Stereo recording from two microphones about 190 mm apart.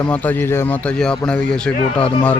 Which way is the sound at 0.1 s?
10° left (ahead or behind).